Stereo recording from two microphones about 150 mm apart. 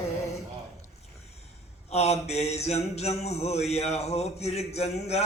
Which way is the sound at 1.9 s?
45° left (ahead or behind).